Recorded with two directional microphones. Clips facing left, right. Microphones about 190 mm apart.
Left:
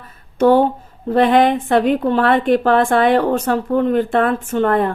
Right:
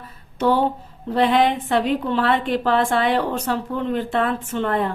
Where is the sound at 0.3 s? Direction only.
50° left (ahead or behind).